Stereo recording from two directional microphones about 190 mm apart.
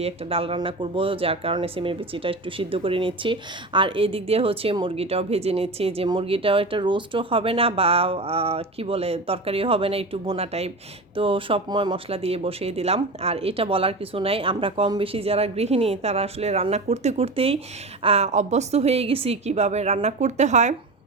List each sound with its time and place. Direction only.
0.0 s speech: 30° right (ahead or behind)